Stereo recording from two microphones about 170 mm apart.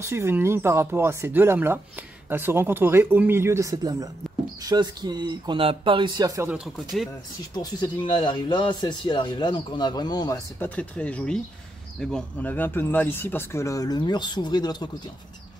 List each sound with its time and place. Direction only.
0.0 s speech: 15° right (ahead or behind)
6.5 s speech: centre (ahead or behind)
7.5 s speech: 25° left (ahead or behind)
10.6 s speech: 10° left (ahead or behind); by 14.9 s 25° left (ahead or behind)